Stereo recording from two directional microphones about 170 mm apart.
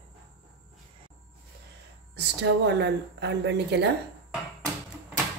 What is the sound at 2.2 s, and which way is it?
A woman's voice, 85° right.